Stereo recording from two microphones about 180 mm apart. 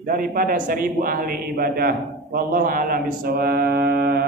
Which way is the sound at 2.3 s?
50° right (ahead or behind).